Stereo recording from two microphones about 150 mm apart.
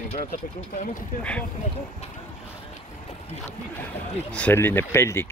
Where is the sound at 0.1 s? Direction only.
60° left (ahead or behind).